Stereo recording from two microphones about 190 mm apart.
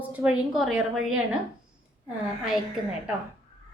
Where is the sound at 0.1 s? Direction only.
10° right (ahead or behind).